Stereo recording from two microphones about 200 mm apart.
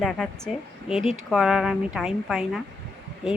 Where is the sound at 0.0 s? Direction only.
Centre (ahead or behind).